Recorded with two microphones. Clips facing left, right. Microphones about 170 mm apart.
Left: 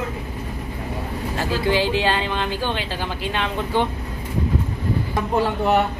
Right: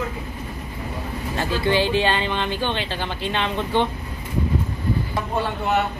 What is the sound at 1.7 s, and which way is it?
Speech, 5° left (ahead or behind).